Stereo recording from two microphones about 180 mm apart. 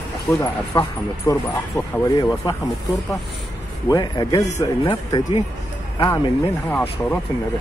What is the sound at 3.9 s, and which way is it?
Speech, 25° left (ahead or behind).